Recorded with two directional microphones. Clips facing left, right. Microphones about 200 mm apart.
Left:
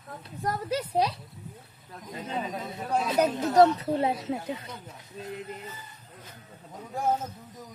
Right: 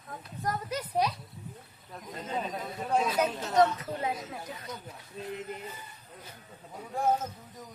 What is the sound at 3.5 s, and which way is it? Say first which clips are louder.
Speech: left 5 dB; 35° left (ahead or behind).